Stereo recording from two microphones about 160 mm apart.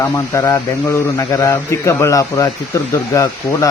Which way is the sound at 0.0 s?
20° left (ahead or behind).